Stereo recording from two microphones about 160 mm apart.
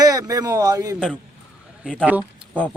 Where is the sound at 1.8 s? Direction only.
5° left (ahead or behind).